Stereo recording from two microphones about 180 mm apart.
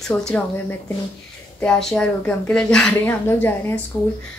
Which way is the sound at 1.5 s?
5° left (ahead or behind).